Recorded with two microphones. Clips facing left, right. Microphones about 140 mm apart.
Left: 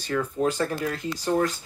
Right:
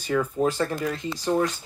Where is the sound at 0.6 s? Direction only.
Centre (ahead or behind).